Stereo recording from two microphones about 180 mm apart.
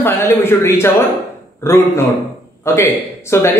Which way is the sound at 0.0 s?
10° left (ahead or behind).